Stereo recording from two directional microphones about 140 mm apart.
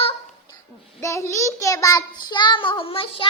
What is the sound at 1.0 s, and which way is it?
Child singing, 20° left (ahead or behind).